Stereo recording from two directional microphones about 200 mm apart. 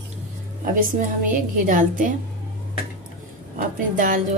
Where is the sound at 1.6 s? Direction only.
40° right (ahead or behind).